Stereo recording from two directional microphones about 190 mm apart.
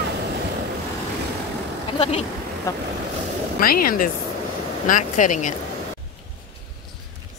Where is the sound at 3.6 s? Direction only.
50° left (ahead or behind).